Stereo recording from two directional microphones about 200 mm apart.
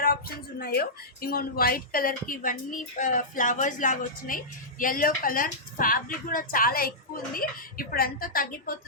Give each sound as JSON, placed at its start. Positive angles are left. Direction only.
{"t": 0.0, "sound": "speech", "side_deg": 50}